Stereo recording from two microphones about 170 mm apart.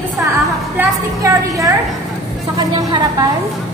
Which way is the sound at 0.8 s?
20° right (ahead or behind).